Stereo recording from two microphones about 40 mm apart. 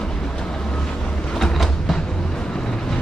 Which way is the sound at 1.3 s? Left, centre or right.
Centre.